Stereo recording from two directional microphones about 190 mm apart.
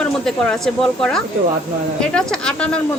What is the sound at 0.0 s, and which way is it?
A woman's voice, 5° left (ahead or behind).